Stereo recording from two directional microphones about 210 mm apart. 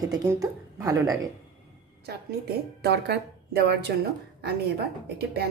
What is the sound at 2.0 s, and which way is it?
A woman's voice, 50° right (ahead or behind).